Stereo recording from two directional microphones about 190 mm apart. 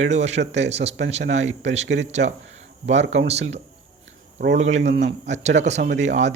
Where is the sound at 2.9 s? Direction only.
75° right (ahead or behind).